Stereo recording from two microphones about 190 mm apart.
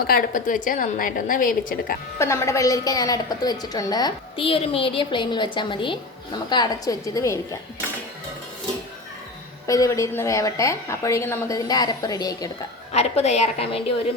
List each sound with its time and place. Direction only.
0.1 s a woman's voice: 50° left (ahead or behind)
2.1 s a woman's voice: 15° left (ahead or behind)
9.6 s a woman's voice: 15° left (ahead or behind)
12.9 s a woman's voice: 35° left (ahead or behind)